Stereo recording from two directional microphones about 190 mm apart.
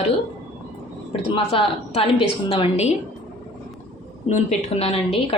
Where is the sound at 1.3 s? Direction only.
30° left (ahead or behind).